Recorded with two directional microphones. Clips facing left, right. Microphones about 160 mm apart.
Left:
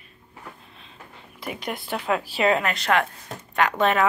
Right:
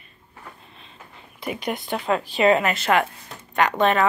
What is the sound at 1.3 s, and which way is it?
Speech, centre (ahead or behind).